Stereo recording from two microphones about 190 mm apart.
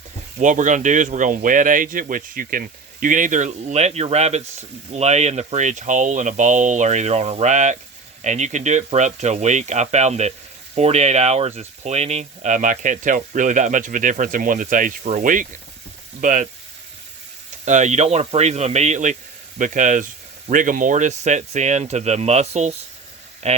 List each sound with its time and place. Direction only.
0.3 s speech: 40° right (ahead or behind)
17.7 s speech: 40° right (ahead or behind)